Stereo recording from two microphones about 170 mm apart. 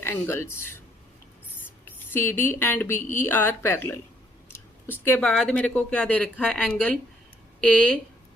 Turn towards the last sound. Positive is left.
turn(degrees=5)  # may be behind; listen again after turning